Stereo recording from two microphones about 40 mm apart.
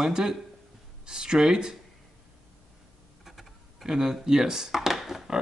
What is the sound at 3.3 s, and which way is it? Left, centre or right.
Speech, centre.